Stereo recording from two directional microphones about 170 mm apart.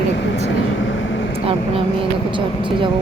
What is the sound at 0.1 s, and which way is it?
Vehicle, 90° left.